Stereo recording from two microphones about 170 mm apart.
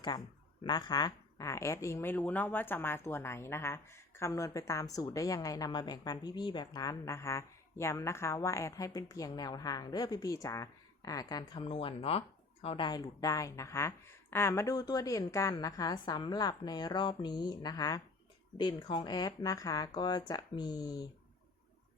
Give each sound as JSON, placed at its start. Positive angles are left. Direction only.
{"t": 0.6, "sound": "a woman's voice", "side_deg": 25}